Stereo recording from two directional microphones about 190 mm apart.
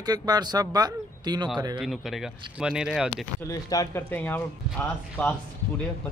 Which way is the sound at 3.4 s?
20° left (ahead or behind).